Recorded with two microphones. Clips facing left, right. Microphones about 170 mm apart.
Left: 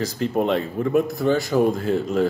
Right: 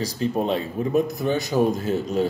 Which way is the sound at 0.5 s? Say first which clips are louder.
Left 2 dB; 15° right (ahead or behind).